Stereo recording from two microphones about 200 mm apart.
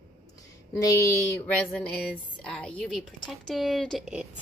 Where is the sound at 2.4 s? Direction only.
5° left (ahead or behind).